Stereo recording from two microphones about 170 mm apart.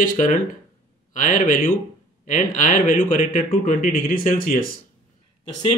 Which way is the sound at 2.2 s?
45° left (ahead or behind).